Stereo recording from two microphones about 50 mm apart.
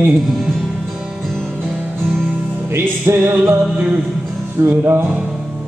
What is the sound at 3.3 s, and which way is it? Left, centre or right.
Music, right.